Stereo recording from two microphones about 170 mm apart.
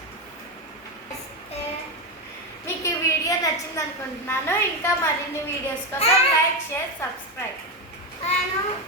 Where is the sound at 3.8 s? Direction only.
15° left (ahead or behind).